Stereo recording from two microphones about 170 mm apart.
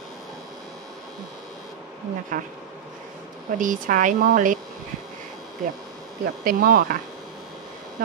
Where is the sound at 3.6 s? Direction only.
50° right (ahead or behind).